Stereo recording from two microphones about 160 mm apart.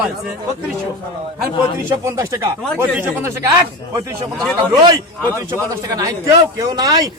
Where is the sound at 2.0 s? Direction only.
20° right (ahead or behind).